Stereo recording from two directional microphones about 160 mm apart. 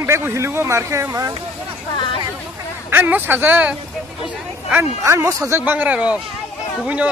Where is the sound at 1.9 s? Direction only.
30° left (ahead or behind).